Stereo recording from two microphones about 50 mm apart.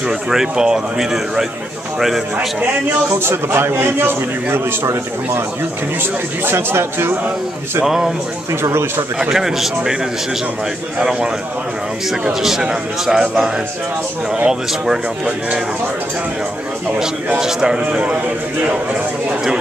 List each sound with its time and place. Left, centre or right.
0.3 s a man's voice: centre
3.1 s a man's voice: right
6.4 s a man's voice: right
7.8 s a man's voice: centre
8.6 s speech: right
9.3 s a man's voice: centre
11.0 s a man's voice: centre
12.3 s a man's voice: centre
17.4 s a man's voice: centre